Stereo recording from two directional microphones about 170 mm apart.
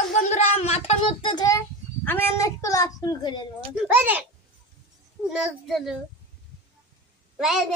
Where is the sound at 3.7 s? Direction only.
10° right (ahead or behind).